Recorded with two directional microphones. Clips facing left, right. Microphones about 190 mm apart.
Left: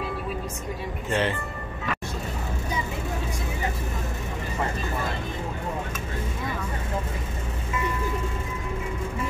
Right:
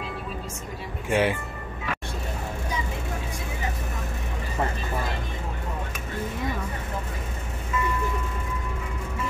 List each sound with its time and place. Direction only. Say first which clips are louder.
1.1 s speech: right 3 dB; 10° right (ahead or behind)